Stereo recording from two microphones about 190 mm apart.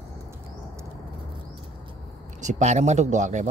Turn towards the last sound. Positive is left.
turn(degrees=-40)  # may be behind; listen again after turning